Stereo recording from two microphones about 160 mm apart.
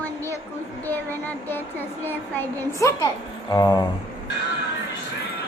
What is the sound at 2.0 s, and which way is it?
A woman's voice, 10° left (ahead or behind).